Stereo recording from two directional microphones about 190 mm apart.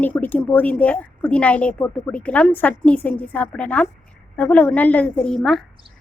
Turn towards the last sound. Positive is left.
turn(degrees=0)  # may be behind; listen again after turning